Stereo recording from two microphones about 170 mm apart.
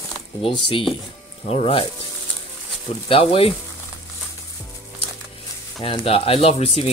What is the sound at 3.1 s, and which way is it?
Speech, 35° left (ahead or behind).